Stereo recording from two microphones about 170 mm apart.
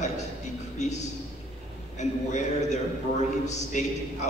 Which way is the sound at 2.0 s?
45° left (ahead or behind).